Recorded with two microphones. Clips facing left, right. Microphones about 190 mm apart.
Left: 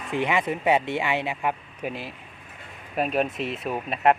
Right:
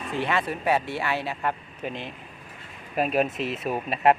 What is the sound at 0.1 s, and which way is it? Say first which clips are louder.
Speech: left 2 dB; 15° left (ahead or behind).